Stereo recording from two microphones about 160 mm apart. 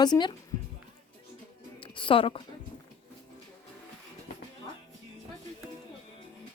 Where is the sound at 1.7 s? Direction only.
30° left (ahead or behind).